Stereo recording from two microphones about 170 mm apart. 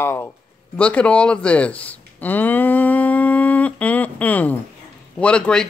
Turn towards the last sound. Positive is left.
turn(degrees=5)  # may be behind; listen again after turning